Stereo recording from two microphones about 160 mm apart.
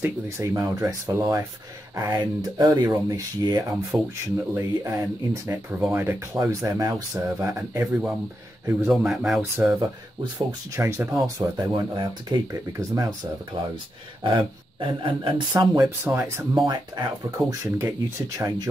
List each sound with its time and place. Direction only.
0.0 s speech: 20° right (ahead or behind); by 9.4 s centre (ahead or behind)
9.6 s speech: 15° right (ahead or behind)
15.7 s speech: 15° right (ahead or behind)
17.0 s speech: 30° right (ahead or behind)
17.5 s speech: 15° right (ahead or behind)